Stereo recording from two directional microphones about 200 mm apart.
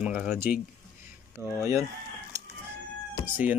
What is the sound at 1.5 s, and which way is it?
Speech, 15° right (ahead or behind).